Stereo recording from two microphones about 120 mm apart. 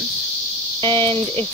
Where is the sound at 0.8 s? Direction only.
45° right (ahead or behind).